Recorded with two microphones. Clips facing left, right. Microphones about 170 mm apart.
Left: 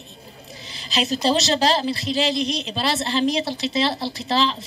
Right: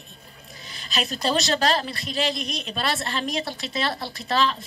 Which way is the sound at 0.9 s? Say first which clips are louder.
Left 4 dB; 25° left (ahead or behind).